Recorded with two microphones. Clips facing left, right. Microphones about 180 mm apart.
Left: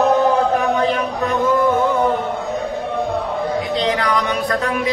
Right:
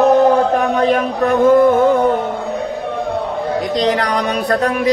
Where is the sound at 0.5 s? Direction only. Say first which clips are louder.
Right 3 dB; 50° right (ahead or behind).